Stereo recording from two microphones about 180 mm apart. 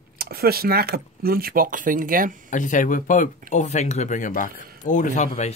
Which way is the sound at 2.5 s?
45° left (ahead or behind).